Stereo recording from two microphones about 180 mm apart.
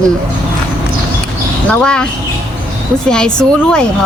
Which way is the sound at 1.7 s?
5° left (ahead or behind).